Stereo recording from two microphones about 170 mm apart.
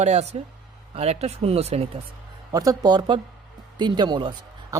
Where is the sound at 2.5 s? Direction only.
20° right (ahead or behind).